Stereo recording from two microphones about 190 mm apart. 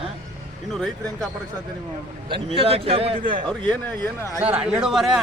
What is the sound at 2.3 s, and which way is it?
Speech, 30° right (ahead or behind).